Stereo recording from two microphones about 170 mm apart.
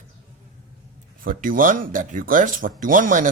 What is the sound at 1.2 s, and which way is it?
Speech, 55° right (ahead or behind).